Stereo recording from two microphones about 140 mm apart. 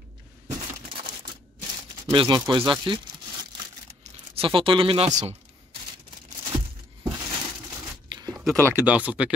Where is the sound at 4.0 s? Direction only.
40° right (ahead or behind).